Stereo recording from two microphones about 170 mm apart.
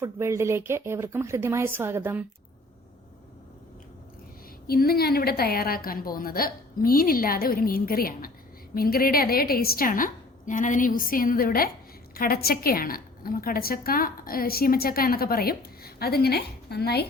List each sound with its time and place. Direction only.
0.0 s speech: 15° right (ahead or behind)
4.6 s a woman's voice: 65° left (ahead or behind)